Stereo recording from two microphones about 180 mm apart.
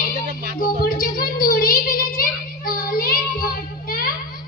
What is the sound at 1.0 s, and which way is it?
Child singing, 55° left (ahead or behind).